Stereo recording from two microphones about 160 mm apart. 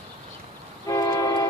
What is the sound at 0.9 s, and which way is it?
Vehicle, 20° left (ahead or behind).